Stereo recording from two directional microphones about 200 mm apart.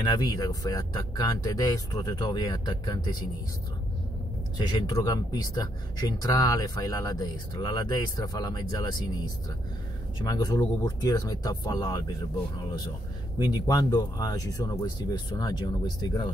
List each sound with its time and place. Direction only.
0.0 s speech: 20° left (ahead or behind)
4.6 s speech: 20° left (ahead or behind)
13.5 s speech: 20° left (ahead or behind)